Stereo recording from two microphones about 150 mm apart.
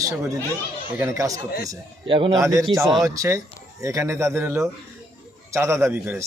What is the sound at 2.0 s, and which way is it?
Speech, 35° right (ahead or behind).